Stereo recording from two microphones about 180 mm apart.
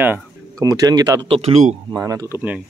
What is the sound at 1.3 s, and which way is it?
Speech, 35° right (ahead or behind).